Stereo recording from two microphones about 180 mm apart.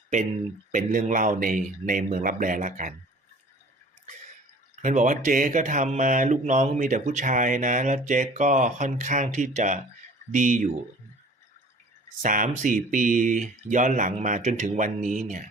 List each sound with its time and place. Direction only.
0.7 s speech: 45° right (ahead or behind)
4.8 s speech: 45° right (ahead or behind)
12.2 s speech: 45° right (ahead or behind)